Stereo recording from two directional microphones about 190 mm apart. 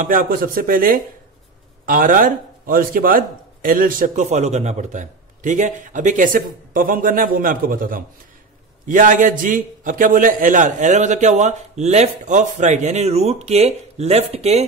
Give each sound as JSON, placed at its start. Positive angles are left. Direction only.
{"t": 0.0, "sound": "a man's voice", "side_deg": -45}